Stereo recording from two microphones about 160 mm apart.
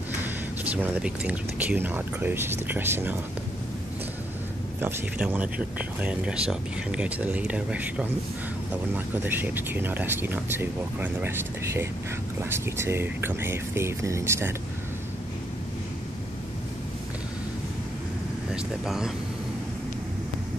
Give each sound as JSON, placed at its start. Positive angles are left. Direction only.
{"t": 0.2, "sound": "speech", "side_deg": -10}
{"t": 4.7, "sound": "speech", "side_deg": -15}
{"t": 8.9, "sound": "speech", "side_deg": -10}
{"t": 18.5, "sound": "speech", "side_deg": 0}